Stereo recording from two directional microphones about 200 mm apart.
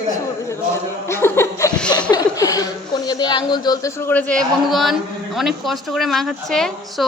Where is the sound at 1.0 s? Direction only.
15° left (ahead or behind).